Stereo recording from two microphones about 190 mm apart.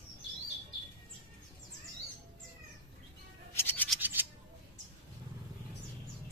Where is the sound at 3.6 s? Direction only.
10° left (ahead or behind).